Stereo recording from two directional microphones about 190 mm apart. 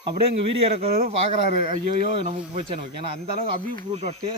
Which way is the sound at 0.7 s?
35° right (ahead or behind).